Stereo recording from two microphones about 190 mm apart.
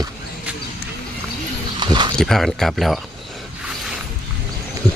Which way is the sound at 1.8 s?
25° right (ahead or behind).